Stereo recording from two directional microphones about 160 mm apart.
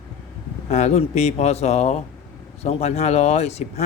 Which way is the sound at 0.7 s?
45° left (ahead or behind).